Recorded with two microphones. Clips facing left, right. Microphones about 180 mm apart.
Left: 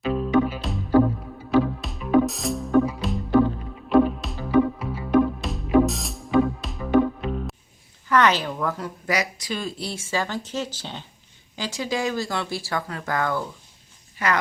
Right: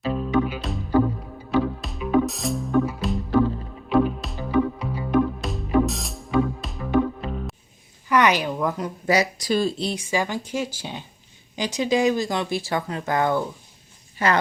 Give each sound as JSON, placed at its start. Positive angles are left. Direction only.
{"t": 0.1, "sound": "music", "side_deg": 0}
{"t": 8.1, "sound": "a woman's voice", "side_deg": -15}
{"t": 9.0, "sound": "speech", "side_deg": -35}